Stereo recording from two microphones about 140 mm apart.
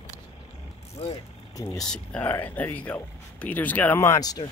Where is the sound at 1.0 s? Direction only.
45° left (ahead or behind).